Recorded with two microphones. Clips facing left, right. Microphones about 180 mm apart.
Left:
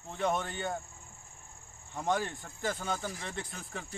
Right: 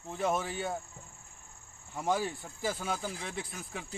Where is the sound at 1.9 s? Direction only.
5° right (ahead or behind).